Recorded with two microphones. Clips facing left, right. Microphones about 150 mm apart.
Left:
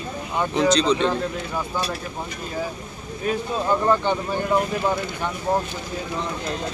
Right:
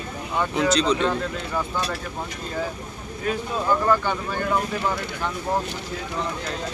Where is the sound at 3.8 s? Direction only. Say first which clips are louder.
Left 2 dB; 20° left (ahead or behind).